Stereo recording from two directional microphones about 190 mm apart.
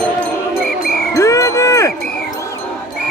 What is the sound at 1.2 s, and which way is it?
Wind chime, 15° left (ahead or behind).